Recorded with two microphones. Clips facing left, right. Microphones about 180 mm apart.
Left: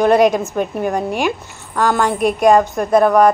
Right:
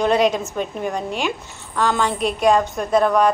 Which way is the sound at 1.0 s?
10° left (ahead or behind).